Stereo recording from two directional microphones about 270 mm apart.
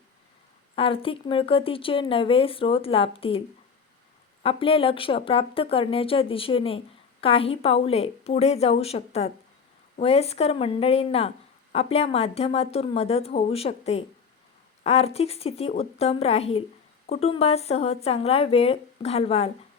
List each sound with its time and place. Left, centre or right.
0.8 s speech: centre
4.4 s speech: centre